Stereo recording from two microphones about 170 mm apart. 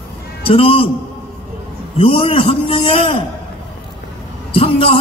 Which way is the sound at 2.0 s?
35° left (ahead or behind).